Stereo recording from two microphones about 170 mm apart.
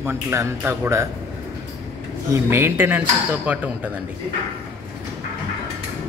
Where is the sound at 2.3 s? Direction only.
15° right (ahead or behind).